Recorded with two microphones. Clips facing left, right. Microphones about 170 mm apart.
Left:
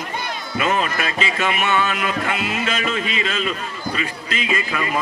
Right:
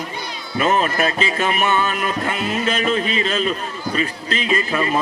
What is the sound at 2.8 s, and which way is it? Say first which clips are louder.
A man's voice: right 4 dB; 35° right (ahead or behind).